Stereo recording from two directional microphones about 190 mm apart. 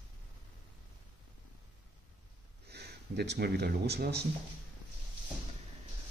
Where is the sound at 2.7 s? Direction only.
60° right (ahead or behind).